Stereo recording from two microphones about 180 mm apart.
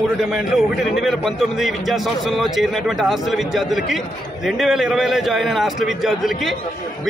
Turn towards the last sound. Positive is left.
turn(degrees=0)  # may be behind; listen again after turning